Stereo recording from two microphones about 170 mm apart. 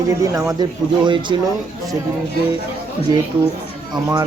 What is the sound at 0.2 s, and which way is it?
A man's voice, 20° right (ahead or behind).